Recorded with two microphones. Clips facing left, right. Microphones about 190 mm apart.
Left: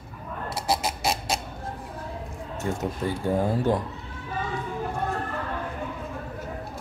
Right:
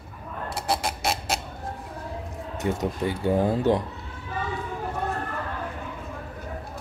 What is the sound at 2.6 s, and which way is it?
Speech, 15° right (ahead or behind).